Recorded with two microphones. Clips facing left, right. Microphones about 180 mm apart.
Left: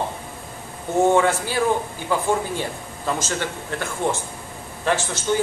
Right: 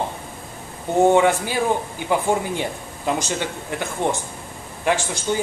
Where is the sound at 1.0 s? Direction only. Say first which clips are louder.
Right 2 dB; 15° right (ahead or behind).